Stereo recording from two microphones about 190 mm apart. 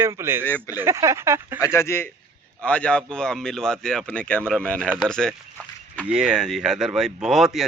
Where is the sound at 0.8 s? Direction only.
15° right (ahead or behind).